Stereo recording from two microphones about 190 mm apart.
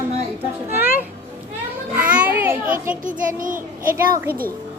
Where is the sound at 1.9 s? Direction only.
10° right (ahead or behind).